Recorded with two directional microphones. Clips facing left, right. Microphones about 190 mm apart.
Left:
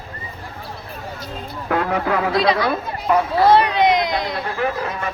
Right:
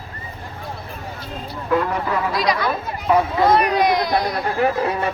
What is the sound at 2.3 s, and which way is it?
Speech, 30° left (ahead or behind).